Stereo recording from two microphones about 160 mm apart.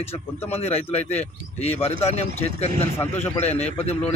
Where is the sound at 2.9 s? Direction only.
15° left (ahead or behind).